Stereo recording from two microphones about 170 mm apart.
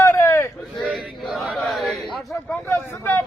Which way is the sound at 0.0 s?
15° left (ahead or behind).